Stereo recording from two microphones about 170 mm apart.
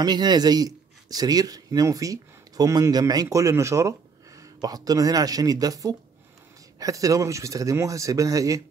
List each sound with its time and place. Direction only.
0.0 s speech: 25° right (ahead or behind)